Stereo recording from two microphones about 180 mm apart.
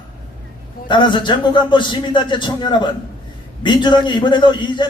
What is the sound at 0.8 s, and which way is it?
A man's voice, 25° left (ahead or behind).